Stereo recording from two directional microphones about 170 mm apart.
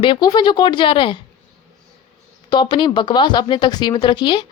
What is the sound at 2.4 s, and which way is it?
Speech, 25° left (ahead or behind).